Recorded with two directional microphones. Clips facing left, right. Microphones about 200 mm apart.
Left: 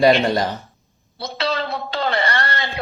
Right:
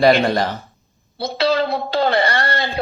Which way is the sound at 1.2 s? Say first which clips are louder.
Right 6 dB; 35° right (ahead or behind).